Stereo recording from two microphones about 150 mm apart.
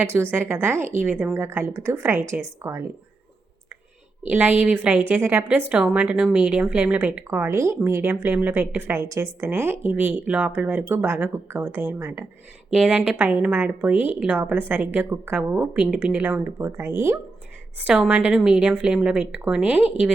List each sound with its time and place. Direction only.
0.0 s a woman's voice: 15° right (ahead or behind)
4.3 s a woman's voice: 10° right (ahead or behind)
12.7 s a woman's voice: 5° right (ahead or behind)